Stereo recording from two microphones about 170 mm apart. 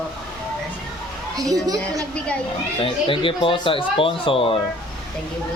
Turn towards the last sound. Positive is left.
turn(degrees=30)  # may be behind; listen again after turning